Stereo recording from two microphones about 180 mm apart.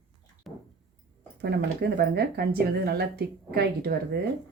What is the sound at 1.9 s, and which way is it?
A woman's voice, 60° right (ahead or behind).